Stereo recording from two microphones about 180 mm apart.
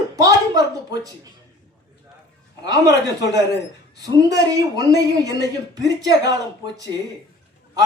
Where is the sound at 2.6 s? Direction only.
20° right (ahead or behind).